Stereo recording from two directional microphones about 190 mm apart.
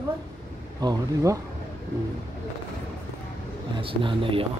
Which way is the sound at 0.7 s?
20° right (ahead or behind).